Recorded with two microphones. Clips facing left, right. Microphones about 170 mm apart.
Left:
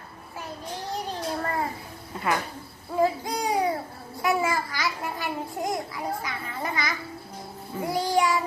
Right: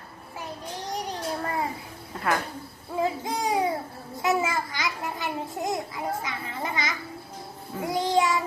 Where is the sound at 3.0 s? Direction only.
20° right (ahead or behind).